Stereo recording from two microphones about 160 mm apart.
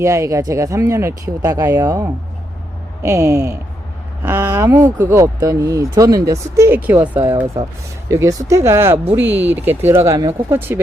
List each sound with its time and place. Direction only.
0.0 s speech: 20° right (ahead or behind)
7.3 s speech: 30° right (ahead or behind); by 10.8 s 15° right (ahead or behind)